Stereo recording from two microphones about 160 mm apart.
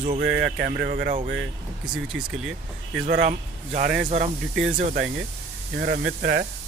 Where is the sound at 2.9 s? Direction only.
60° right (ahead or behind).